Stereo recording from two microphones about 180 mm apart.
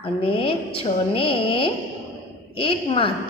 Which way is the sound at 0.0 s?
30° left (ahead or behind).